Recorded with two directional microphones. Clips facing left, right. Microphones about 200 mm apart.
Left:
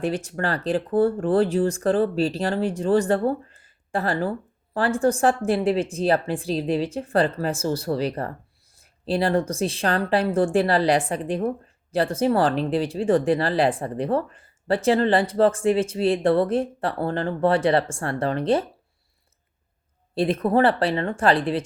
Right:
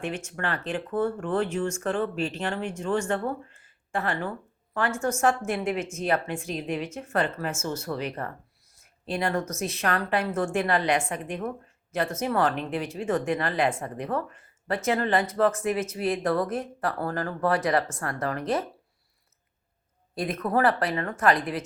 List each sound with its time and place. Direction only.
0.0 s speech: 35° left (ahead or behind)
20.1 s speech: 30° left (ahead or behind)